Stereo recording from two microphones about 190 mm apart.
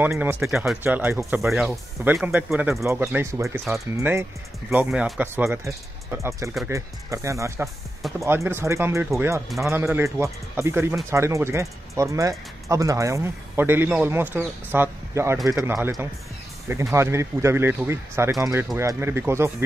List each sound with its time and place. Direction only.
0.0 s speech: 10° right (ahead or behind)
1.5 s speech: centre (ahead or behind)
6.1 s speech: 15° right (ahead or behind)